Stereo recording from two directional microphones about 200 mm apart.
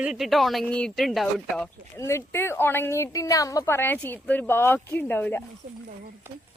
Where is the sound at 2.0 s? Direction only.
15° left (ahead or behind).